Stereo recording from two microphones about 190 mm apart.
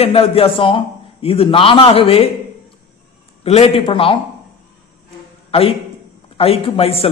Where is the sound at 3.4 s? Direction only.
30° left (ahead or behind).